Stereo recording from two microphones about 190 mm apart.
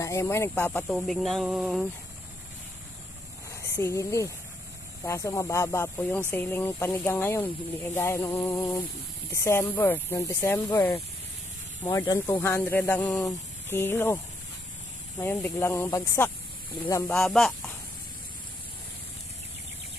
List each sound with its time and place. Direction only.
0.0 s speech: 15° left (ahead or behind); by 1.9 s centre (ahead or behind)
3.6 s speech: 15° left (ahead or behind)
17.2 s speech: centre (ahead or behind)